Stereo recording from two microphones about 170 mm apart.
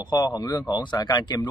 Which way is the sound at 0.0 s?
25° left (ahead or behind).